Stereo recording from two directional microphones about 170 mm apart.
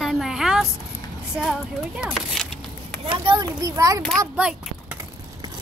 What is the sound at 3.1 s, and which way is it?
Speech, 25° right (ahead or behind).